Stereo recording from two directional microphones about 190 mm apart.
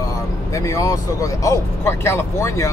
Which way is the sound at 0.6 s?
15° left (ahead or behind).